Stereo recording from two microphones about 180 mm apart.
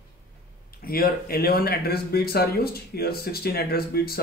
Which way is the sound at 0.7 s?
55° left (ahead or behind).